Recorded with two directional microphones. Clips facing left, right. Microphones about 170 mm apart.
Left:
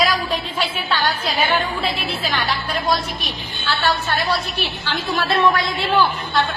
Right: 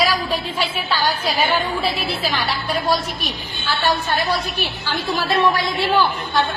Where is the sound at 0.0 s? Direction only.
10° right (ahead or behind).